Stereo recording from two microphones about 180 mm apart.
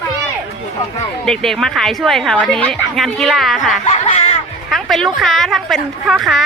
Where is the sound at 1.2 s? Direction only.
Centre (ahead or behind).